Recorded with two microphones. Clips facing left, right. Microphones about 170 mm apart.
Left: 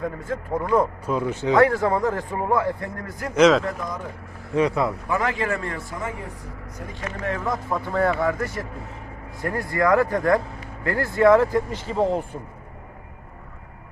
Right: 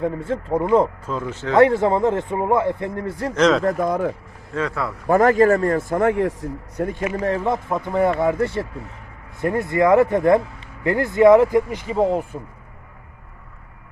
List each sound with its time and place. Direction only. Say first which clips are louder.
0.0 s a man's voice: right 5 dB; 30° right (ahead or behind)
1.0 s speech: left 3 dB; 15° left (ahead or behind)
1.5 s a man's voice: right 4 dB; 25° right (ahead or behind)
3.3 s speech: left 1 dB; 5° left (ahead or behind)
3.6 s a man's voice: right 10 dB; 50° right (ahead or behind)
4.5 s speech: left 4 dB; 20° left (ahead or behind)
5.0 s a man's voice: right 10 dB; 50° right (ahead or behind); by 6.9 s 75° right (ahead or behind)
7.3 s a man's voice: right 3 dB; 30° right (ahead or behind); by 12.2 s 10° right (ahead or behind)